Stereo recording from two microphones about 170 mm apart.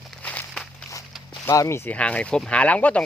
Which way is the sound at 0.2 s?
10° left (ahead or behind).